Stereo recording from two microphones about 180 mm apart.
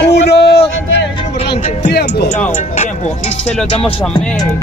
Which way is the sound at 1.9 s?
65° left (ahead or behind).